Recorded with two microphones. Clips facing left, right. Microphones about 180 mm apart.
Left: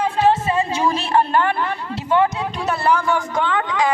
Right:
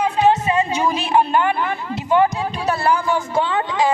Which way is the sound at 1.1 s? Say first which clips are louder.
Right 2 dB; 10° right (ahead or behind).